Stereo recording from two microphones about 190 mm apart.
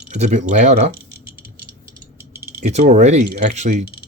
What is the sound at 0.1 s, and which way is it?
Speech, 40° right (ahead or behind).